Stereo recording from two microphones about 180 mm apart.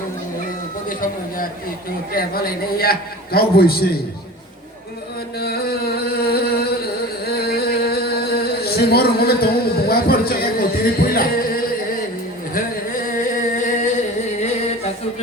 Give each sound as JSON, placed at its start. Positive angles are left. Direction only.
{"t": 2.1, "sound": "a man's voice", "side_deg": 55}
{"t": 5.4, "sound": "a sound", "side_deg": 60}
{"t": 12.5, "sound": "singing", "side_deg": 50}